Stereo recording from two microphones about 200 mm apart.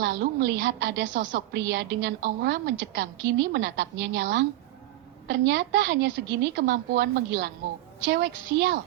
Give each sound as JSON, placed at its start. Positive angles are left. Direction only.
{"t": 0.0, "sound": "a woman's voice", "side_deg": -60}